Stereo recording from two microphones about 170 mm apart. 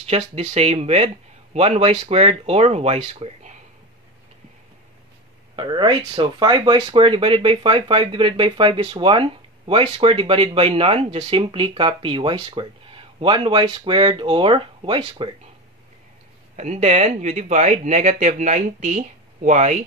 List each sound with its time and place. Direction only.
0.4 s speech: 35° right (ahead or behind)
5.6 s speech: 25° right (ahead or behind)
16.5 s speech: 40° right (ahead or behind)